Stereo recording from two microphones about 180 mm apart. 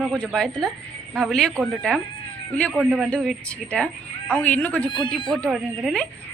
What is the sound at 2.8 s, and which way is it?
A woman's voice, 5° right (ahead or behind).